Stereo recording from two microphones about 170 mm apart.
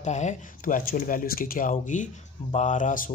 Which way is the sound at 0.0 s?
45° left (ahead or behind).